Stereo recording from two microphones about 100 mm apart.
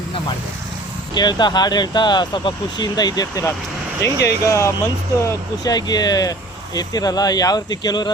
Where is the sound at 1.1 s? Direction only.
45° left (ahead or behind).